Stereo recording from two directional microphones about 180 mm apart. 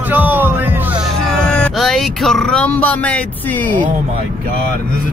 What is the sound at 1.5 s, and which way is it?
Speech, 5° left (ahead or behind).